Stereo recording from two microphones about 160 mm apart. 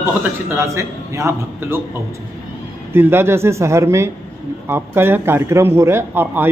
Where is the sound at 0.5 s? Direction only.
15° right (ahead or behind).